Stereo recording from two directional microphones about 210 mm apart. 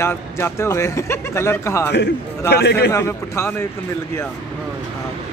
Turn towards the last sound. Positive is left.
turn(degrees=10)  # may be behind; listen again after turning